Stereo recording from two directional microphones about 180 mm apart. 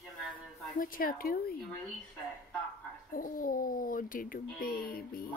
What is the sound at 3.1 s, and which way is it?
Speech, 50° left (ahead or behind).